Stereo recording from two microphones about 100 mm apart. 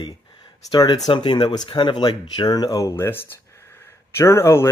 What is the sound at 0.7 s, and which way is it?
Speech, 40° left (ahead or behind).